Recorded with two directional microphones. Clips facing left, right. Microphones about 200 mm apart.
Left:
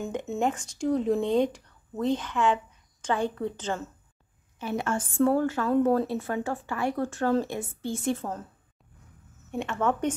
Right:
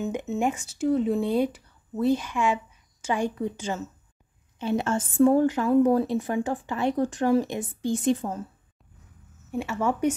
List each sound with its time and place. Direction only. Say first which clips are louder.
0.0 s a woman's voice: right 2 dB; 5° right (ahead or behind)
4.6 s a woman's voice: right 4 dB; 25° right (ahead or behind)
9.5 s a woman's voice: right 1 dB; 5° right (ahead or behind)